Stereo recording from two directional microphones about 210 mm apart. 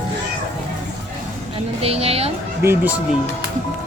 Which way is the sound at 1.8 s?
30° right (ahead or behind).